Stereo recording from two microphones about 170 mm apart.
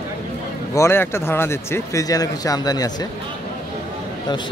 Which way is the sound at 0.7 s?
15° left (ahead or behind).